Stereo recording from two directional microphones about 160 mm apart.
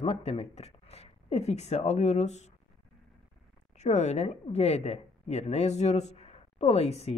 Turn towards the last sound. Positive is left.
turn(degrees=40)  # may be behind; listen again after turning